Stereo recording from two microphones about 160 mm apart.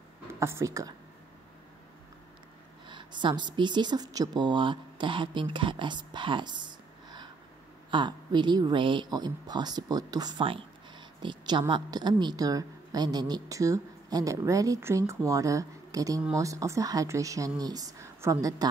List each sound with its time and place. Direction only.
0.3 s a woman's voice: 15° right (ahead or behind)
2.9 s speech: 30° right (ahead or behind)